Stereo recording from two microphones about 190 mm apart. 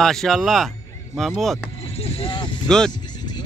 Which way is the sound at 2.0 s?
30° left (ahead or behind).